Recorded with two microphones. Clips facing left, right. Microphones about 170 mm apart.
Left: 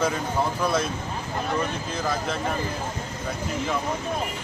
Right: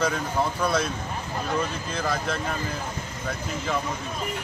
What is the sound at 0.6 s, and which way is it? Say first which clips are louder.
Speech: even; centre (ahead or behind).